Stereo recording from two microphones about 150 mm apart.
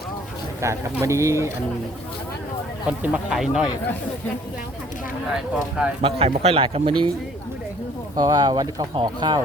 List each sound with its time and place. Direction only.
0.6 s speech: 20° right (ahead or behind)
3.0 s speech: 5° right (ahead or behind)
5.3 s speech: 5° right (ahead or behind)
6.0 s a man's voice: 40° right (ahead or behind)
8.1 s speech: 25° right (ahead or behind)